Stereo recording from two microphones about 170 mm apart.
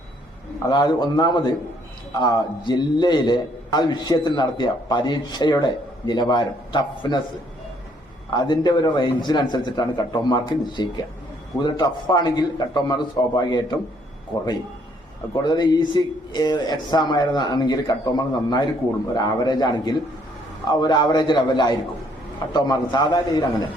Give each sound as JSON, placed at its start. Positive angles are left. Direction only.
{"t": 0.7, "sound": "a man's voice", "side_deg": 25}
{"t": 8.3, "sound": "a man's voice", "side_deg": 25}
{"t": 15.4, "sound": "a man's voice", "side_deg": 25}